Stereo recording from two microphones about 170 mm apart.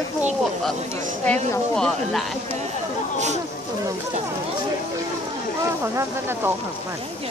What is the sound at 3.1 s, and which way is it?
Speech, 45° right (ahead or behind).